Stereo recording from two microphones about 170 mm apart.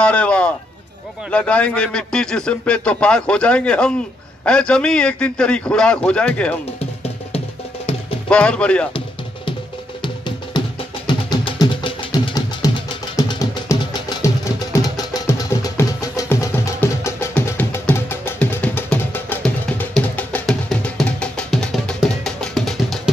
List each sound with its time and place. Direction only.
0.0 s a sound: 5° left (ahead or behind)
1.3 s a man's voice: 5° left (ahead or behind)
8.3 s a man's voice: 5° left (ahead or behind)
10.0 s music: 25° left (ahead or behind); by 23.1 s centre (ahead or behind)